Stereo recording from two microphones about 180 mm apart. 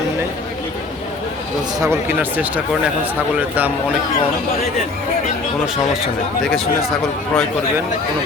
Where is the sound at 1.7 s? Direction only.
15° right (ahead or behind).